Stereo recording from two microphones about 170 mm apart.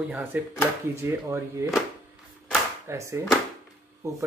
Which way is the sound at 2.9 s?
15° right (ahead or behind).